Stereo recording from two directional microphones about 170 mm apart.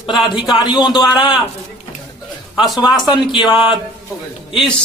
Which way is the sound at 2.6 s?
Centre (ahead or behind).